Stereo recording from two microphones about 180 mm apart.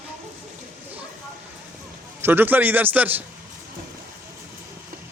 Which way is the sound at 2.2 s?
10° right (ahead or behind).